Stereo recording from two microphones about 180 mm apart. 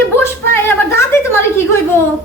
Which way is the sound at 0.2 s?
15° left (ahead or behind).